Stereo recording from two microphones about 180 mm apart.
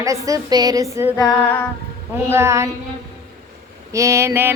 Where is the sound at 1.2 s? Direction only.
5° left (ahead or behind).